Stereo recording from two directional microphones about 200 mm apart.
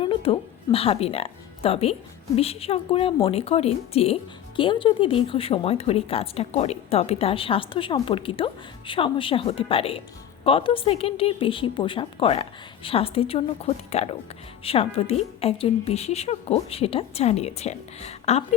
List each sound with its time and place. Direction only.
0.0 s speech: 25° left (ahead or behind)